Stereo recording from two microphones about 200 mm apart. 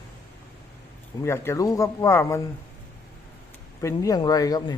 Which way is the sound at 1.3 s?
15° left (ahead or behind).